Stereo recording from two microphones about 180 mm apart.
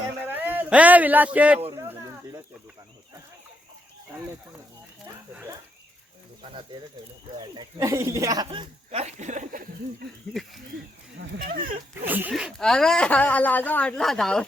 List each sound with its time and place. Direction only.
0.3 s a man's voice: 10° right (ahead or behind)
1.7 s a sound: 20° right (ahead or behind)
7.5 s speech: 20° right (ahead or behind)
8.4 s speech: 30° right (ahead or behind); by 9.6 s 45° right (ahead or behind)
11.4 s speech: 50° right (ahead or behind)
12.0 s a woman's voice: 10° right (ahead or behind)